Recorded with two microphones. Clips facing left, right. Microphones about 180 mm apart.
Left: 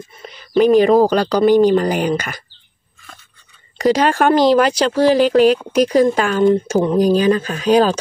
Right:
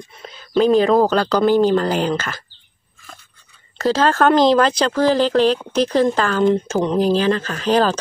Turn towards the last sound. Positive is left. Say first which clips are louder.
# left 3 dB
turn(degrees=10)  # may be behind; listen again after turning